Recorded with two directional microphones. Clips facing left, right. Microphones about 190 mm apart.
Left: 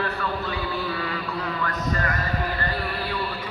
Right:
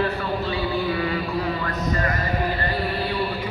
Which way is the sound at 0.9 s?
20° right (ahead or behind).